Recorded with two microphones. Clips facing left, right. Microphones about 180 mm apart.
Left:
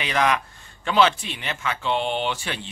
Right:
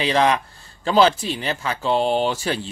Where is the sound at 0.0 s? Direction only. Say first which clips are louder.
Right 4 dB; 30° right (ahead or behind).